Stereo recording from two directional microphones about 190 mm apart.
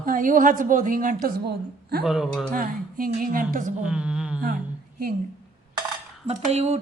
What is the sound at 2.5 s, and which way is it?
A woman's voice, 45° right (ahead or behind).